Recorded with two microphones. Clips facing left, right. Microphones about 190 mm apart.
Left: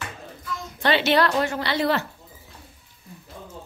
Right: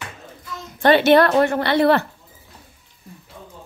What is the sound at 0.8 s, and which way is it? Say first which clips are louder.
A woman's voice: right 7 dB; 50° right (ahead or behind).